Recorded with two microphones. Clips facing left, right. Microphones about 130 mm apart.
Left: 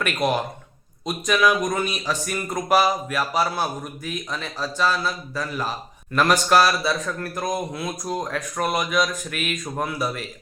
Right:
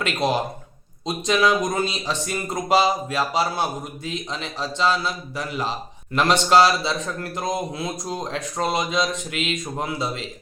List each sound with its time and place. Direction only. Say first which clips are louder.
0.0 s a man's voice: even; 30° right (ahead or behind)